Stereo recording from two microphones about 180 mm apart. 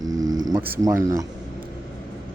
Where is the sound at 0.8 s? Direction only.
20° right (ahead or behind).